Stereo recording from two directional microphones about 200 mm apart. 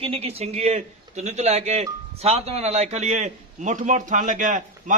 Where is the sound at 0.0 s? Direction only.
30° right (ahead or behind).